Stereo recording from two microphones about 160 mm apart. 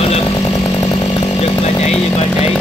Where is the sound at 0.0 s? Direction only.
40° left (ahead or behind).